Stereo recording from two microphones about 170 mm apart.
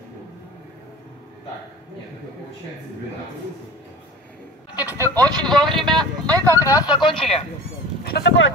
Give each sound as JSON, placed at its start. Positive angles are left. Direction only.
{"t": 5.0, "sound": "speech", "side_deg": 10}
{"t": 5.9, "sound": "speech", "side_deg": -20}
{"t": 6.6, "sound": "speech", "side_deg": 20}
{"t": 8.0, "sound": "speech", "side_deg": 75}